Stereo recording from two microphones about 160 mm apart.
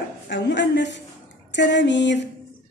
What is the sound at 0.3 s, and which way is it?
A woman's voice, 90° left.